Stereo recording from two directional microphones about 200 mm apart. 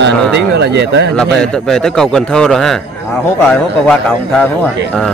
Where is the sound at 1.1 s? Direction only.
5° left (ahead or behind).